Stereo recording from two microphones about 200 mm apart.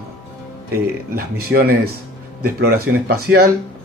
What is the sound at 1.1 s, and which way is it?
Speech, 50° right (ahead or behind).